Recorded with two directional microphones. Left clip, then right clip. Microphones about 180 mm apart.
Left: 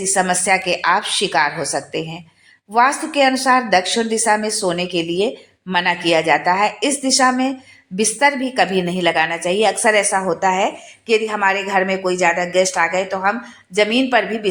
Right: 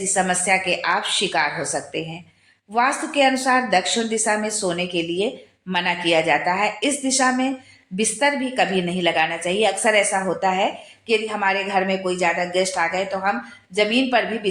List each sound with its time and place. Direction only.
0.0 s a woman's voice: 30° left (ahead or behind)